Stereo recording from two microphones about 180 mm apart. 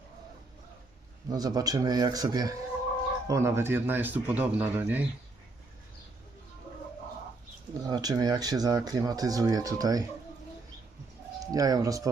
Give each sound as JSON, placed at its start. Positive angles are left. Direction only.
{"t": 1.3, "sound": "speech", "side_deg": -20}
{"t": 7.7, "sound": "speech", "side_deg": -20}
{"t": 11.3, "sound": "speech", "side_deg": -20}